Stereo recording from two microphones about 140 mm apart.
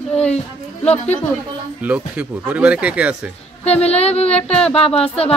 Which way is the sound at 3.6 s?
50° left (ahead or behind).